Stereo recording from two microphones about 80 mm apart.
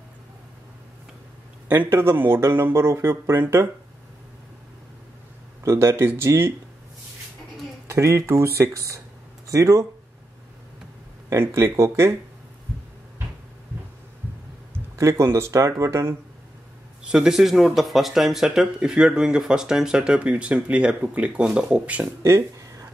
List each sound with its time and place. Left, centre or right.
1.7 s speech: right
5.6 s speech: right
7.9 s speech: right
11.2 s speech: right
15.0 s speech: right
17.0 s speech: centre
22.2 s a sound: right